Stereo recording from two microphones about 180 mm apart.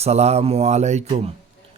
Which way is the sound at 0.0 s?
35° right (ahead or behind).